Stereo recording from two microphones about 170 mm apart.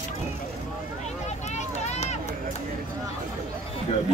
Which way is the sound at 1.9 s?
40° left (ahead or behind).